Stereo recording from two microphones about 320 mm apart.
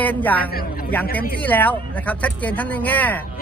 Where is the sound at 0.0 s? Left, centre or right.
Centre.